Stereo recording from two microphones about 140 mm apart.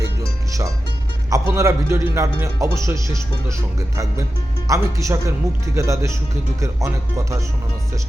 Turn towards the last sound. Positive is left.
turn(degrees=-20)  # may be behind; listen again after turning